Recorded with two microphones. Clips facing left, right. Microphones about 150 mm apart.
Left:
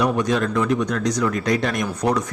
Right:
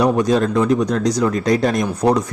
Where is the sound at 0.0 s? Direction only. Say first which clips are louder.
Right 5 dB; 35° right (ahead or behind).